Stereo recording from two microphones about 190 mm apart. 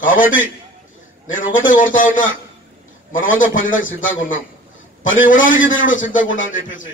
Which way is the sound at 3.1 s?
45° left (ahead or behind).